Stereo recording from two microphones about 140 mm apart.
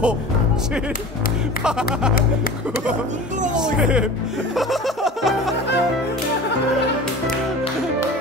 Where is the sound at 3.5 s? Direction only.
5° right (ahead or behind).